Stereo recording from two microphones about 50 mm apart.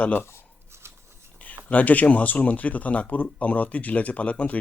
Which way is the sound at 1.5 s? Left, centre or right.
Left.